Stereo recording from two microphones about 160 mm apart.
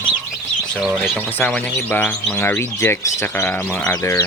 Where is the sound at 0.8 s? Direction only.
5° right (ahead or behind).